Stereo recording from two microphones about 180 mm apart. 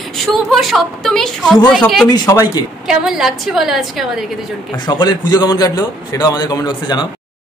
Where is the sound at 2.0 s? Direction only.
20° left (ahead or behind).